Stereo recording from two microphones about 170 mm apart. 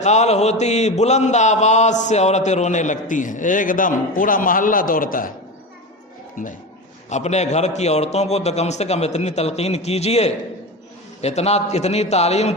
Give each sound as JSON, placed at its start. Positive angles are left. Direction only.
{"t": 0.0, "sound": "mantra", "side_deg": 40}
{"t": 6.4, "sound": "mantra", "side_deg": 50}
{"t": 7.1, "sound": "a man's voice", "side_deg": 40}